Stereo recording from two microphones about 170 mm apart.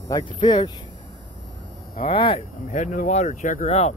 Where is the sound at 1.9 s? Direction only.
35° left (ahead or behind).